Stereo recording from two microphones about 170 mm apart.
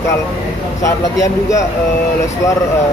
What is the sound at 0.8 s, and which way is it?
Speech, 20° left (ahead or behind).